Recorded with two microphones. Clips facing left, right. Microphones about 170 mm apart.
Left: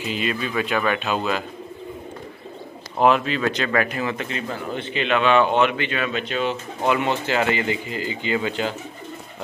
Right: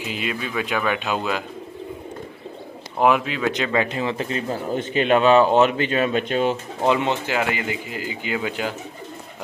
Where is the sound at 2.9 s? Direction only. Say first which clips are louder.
Left 1 dB; 10° right (ahead or behind); by 6.6 s 45° right (ahead or behind).